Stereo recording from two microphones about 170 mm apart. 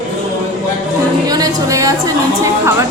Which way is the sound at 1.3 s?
20° right (ahead or behind).